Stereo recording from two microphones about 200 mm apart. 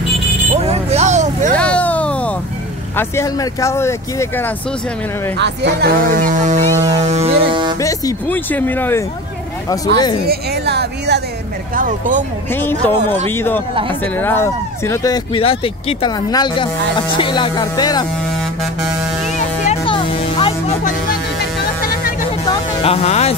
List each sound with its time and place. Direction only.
0.7 s a sound: 30° right (ahead or behind)
1.6 s vehicle: 5° left (ahead or behind)
3.0 s speech: 15° left (ahead or behind)
5.4 s speech: 55° right (ahead or behind); by 6.6 s 40° right (ahead or behind)
7.0 s music: 30° right (ahead or behind)
7.8 s speech: 10° left (ahead or behind)
9.7 s speech: 20° left (ahead or behind)
10.2 s speech: 55° right (ahead or behind)
11.7 s speech: 45° right (ahead or behind)
12.5 s speech: 10° left (ahead or behind)
15.3 s speech: 25° left (ahead or behind)
19.3 s music: 35° left (ahead or behind)
22.5 s music: 25° left (ahead or behind)